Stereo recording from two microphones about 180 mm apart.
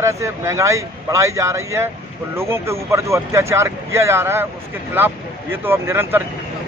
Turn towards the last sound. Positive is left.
turn(degrees=-15)  # may be behind; listen again after turning